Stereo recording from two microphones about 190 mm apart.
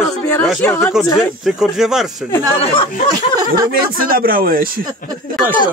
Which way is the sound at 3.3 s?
20° right (ahead or behind).